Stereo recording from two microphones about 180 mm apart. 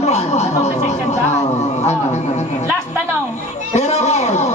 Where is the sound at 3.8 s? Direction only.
35° left (ahead or behind).